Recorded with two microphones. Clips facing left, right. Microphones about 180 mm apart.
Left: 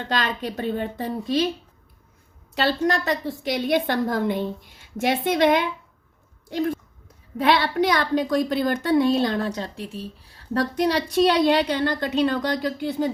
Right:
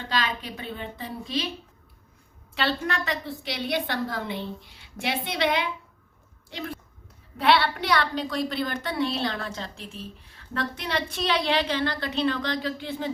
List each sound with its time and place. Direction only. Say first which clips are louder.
0.1 s a woman's voice: left 3 dB; 50° left (ahead or behind)
2.6 s a woman's voice: left 6 dB; 40° left (ahead or behind)